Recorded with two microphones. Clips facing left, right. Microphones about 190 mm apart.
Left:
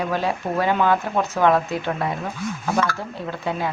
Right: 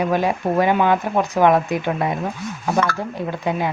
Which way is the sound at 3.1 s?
15° right (ahead or behind).